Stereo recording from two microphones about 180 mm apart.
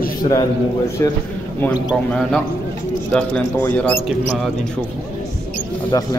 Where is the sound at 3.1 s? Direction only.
5° left (ahead or behind).